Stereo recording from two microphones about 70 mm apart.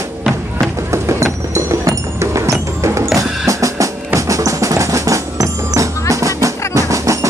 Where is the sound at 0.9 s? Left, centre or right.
Right.